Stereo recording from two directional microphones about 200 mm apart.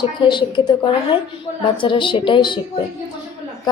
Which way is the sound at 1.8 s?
25° left (ahead or behind).